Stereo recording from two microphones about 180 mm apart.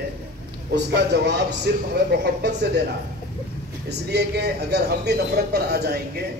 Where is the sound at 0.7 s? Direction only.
70° right (ahead or behind).